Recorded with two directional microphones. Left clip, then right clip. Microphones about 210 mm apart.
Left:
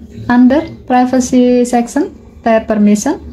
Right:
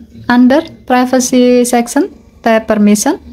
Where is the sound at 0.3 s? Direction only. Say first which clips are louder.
Right 1 dB; 30° right (ahead or behind).